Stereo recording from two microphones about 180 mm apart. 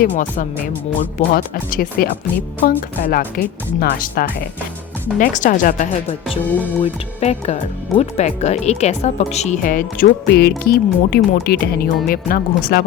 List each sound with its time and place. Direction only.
0.0 s speech: 45° left (ahead or behind)
6.5 s speech: 10° left (ahead or behind)
6.8 s speech: 35° left (ahead or behind); by 12.8 s 55° left (ahead or behind)